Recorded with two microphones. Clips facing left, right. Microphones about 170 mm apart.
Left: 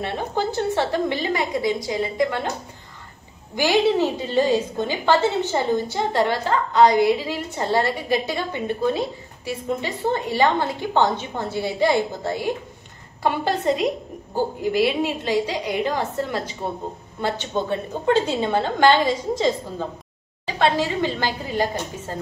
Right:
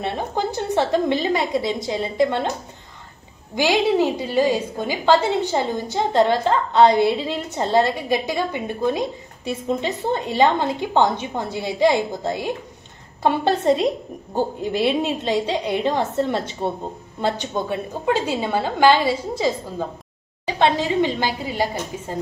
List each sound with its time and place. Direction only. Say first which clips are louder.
0.0 s a woman's voice: right 1 dB; 20° right (ahead or behind)
3.5 s a woman's voice: right 1 dB; 15° right (ahead or behind)
17.2 s a woman's voice: right 1 dB; 15° right (ahead or behind)
20.4 s a woman's voice: right 1 dB; 20° right (ahead or behind)